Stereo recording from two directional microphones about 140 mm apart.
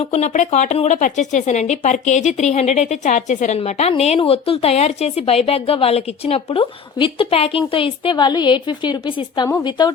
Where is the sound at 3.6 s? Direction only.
50° left (ahead or behind).